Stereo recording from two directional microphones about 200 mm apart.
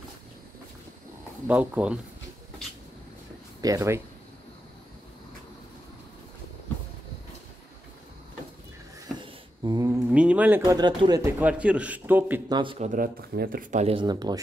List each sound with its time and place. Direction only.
1.5 s a man's voice: 10° right (ahead or behind)
3.6 s a man's voice: 15° right (ahead or behind)
9.2 s a sound: 20° right (ahead or behind)
10.6 s a man's voice: 20° right (ahead or behind)
12.4 s speech: 20° right (ahead or behind)
12.7 s speech: 40° right (ahead or behind); by 14.4 s 20° right (ahead or behind)